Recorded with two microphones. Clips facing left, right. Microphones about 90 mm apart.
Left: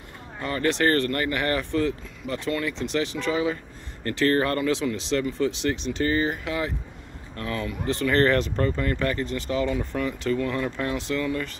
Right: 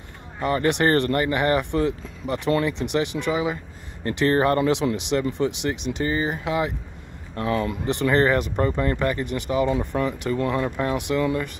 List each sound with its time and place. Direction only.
0.4 s speech: 20° right (ahead or behind)